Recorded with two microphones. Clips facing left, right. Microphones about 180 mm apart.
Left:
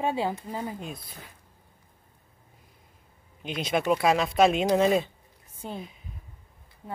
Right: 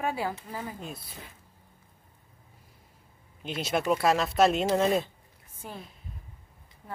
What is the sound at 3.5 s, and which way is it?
Speech, 5° right (ahead or behind).